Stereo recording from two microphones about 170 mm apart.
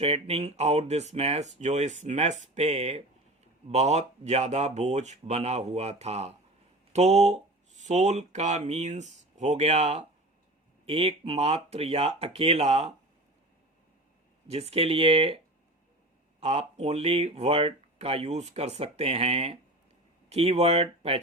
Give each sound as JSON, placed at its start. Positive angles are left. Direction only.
{"t": 0.0, "sound": "speech", "side_deg": -35}
{"t": 14.5, "sound": "speech", "side_deg": -35}
{"t": 16.4, "sound": "speech", "side_deg": -35}